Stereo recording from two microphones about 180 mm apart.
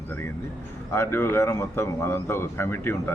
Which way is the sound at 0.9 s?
15° left (ahead or behind).